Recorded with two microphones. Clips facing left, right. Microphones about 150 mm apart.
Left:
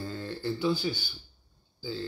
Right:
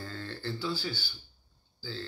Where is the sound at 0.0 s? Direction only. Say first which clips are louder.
Left 4 dB; 15° left (ahead or behind).